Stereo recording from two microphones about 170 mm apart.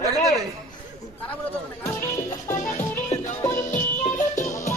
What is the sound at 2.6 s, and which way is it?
Music, 45° left (ahead or behind).